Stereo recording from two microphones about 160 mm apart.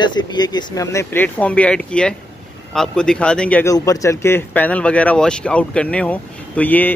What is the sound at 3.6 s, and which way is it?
Speech, 20° left (ahead or behind).